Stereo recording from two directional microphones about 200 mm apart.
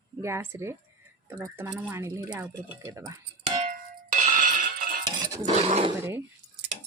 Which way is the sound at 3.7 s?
40° right (ahead or behind).